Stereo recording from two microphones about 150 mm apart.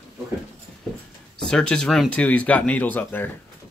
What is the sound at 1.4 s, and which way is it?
Speech, 5° left (ahead or behind).